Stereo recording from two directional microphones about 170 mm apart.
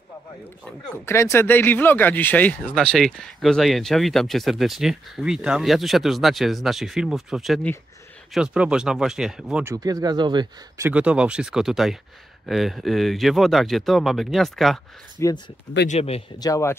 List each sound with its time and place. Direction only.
0.7 s speech: 15° left (ahead or behind); by 9.7 s 5° right (ahead or behind)
9.7 s speech: 20° right (ahead or behind)
10.9 s speech: 5° right (ahead or behind)
15.1 s speech: 20° left (ahead or behind)
15.9 s speech: 35° left (ahead or behind)
16.3 s speech: 20° left (ahead or behind)